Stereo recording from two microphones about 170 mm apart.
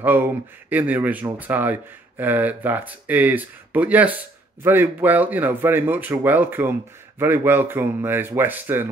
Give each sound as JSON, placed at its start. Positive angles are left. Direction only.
{"t": 0.0, "sound": "speech", "side_deg": -10}